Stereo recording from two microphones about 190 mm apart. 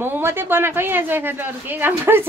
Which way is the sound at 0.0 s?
10° right (ahead or behind).